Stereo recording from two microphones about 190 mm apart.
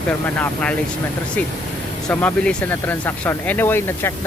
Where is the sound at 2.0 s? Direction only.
5° left (ahead or behind).